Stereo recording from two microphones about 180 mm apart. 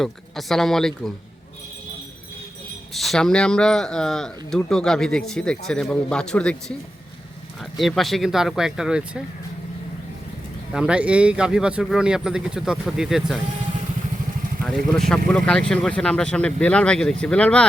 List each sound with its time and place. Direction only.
0.0 s a man's voice: centre (ahead or behind)
2.9 s a man's voice: centre (ahead or behind)
10.7 s a man's voice: 5° right (ahead or behind)
14.6 s a man's voice: centre (ahead or behind)